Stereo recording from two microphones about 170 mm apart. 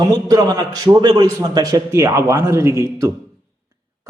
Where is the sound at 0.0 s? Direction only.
20° right (ahead or behind).